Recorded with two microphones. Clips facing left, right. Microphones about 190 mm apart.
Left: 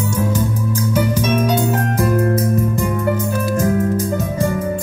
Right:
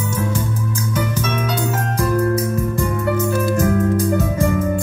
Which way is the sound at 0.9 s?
10° left (ahead or behind).